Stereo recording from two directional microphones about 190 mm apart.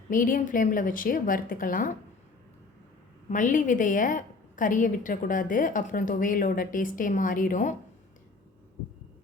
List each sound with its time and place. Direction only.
0.1 s a woman's voice: 45° left (ahead or behind)
3.2 s a woman's voice: 40° left (ahead or behind)